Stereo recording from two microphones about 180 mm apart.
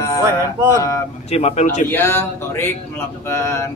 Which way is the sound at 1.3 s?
35° left (ahead or behind).